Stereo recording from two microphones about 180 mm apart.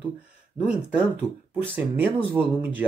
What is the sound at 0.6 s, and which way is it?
Speech, 5° right (ahead or behind).